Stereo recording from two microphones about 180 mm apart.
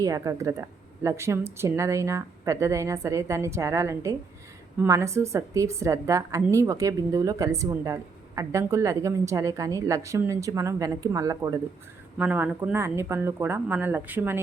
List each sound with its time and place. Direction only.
0.0 s a woman's voice: 20° right (ahead or behind)